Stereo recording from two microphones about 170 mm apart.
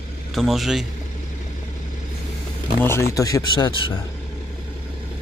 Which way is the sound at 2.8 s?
15° left (ahead or behind).